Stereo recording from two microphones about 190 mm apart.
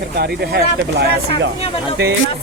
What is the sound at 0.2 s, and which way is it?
Speech, 60° right (ahead or behind).